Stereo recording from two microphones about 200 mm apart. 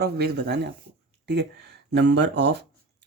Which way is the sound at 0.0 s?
55° right (ahead or behind).